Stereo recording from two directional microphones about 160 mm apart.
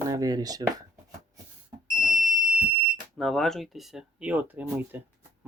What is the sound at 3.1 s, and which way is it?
Speech, centre (ahead or behind).